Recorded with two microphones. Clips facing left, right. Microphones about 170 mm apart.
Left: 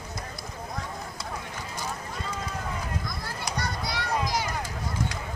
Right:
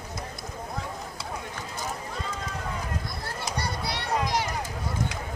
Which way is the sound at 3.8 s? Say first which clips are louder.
Right 1 dB; 60° right (ahead or behind).